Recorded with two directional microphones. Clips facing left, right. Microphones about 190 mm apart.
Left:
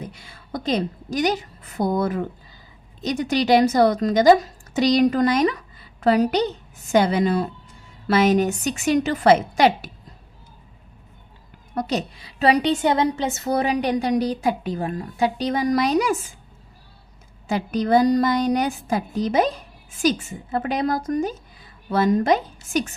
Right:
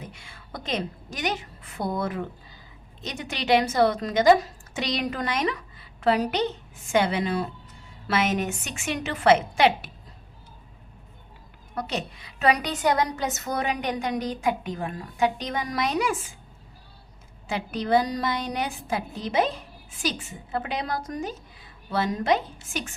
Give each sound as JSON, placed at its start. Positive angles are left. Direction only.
{"t": 0.0, "sound": "a woman's voice", "side_deg": 35}
{"t": 11.7, "sound": "a woman's voice", "side_deg": 40}
{"t": 17.5, "sound": "a woman's voice", "side_deg": 40}